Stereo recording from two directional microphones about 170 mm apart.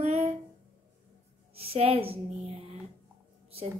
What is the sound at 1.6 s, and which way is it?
Speech, 35° right (ahead or behind).